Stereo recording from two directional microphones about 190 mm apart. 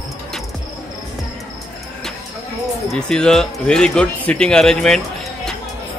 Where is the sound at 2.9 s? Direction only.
5° left (ahead or behind).